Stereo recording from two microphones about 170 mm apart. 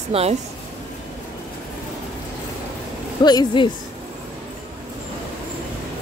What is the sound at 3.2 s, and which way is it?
Speech, 25° left (ahead or behind).